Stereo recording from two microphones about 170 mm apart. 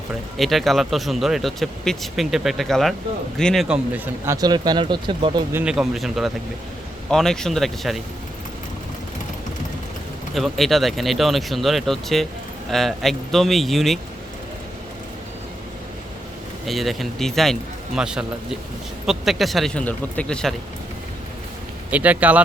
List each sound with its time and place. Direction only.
0.3 s a man's voice: centre (ahead or behind)
4.4 s speech: 25° right (ahead or behind)
5.5 s a man's voice: 10° right (ahead or behind)
10.3 s a man's voice: centre (ahead or behind)
16.6 s a man's voice: centre (ahead or behind)
21.8 s speech: 10° right (ahead or behind)